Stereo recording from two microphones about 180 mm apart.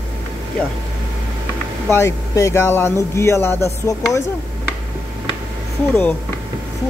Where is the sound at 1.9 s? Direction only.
15° left (ahead or behind).